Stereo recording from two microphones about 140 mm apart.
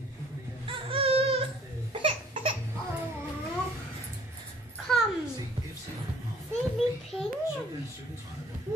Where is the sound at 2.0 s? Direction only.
40° right (ahead or behind).